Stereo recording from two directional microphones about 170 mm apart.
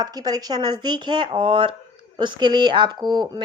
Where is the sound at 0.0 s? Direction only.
25° right (ahead or behind).